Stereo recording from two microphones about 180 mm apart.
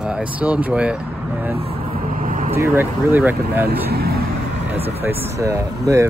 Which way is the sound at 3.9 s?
60° right (ahead or behind).